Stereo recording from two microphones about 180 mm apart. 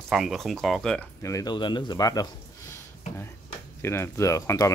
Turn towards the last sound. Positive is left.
turn(degrees=15)  # may be behind; listen again after turning